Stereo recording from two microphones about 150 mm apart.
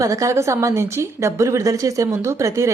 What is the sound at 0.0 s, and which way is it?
A woman's voice, 20° right (ahead or behind).